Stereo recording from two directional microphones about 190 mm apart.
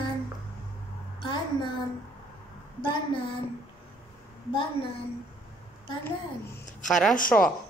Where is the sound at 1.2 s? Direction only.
25° left (ahead or behind).